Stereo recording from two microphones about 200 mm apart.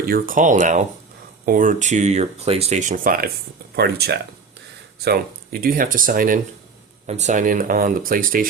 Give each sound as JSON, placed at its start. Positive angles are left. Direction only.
{"t": 0.0, "sound": "speech", "side_deg": -45}